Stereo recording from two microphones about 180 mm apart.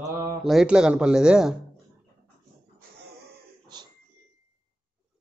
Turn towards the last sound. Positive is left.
turn(degrees=-25)  # may be behind; listen again after turning